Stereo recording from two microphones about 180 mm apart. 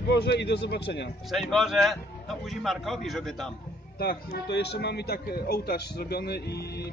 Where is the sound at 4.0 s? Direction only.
65° left (ahead or behind).